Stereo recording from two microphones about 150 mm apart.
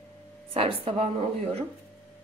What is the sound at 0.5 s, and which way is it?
Speech, 40° right (ahead or behind).